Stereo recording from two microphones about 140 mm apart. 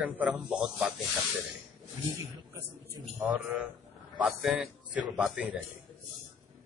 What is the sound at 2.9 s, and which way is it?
Speech, 15° right (ahead or behind).